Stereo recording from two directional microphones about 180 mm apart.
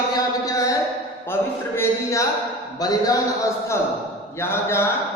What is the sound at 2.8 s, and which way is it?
Speech, 20° left (ahead or behind).